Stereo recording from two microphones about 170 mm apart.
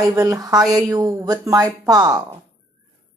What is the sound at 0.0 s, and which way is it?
Speech, 20° right (ahead or behind).